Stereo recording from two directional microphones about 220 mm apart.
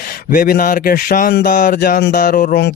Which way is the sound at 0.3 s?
40° left (ahead or behind).